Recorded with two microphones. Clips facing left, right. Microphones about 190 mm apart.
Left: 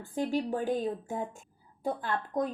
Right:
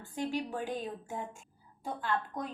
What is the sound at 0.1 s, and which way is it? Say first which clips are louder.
A woman's voice: left 5 dB; 50° left (ahead or behind).